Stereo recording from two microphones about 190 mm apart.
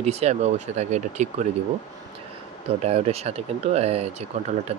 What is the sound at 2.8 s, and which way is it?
Speech, 35° right (ahead or behind).